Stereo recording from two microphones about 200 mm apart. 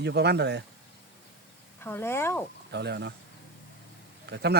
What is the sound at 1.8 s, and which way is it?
Speech, 10° left (ahead or behind).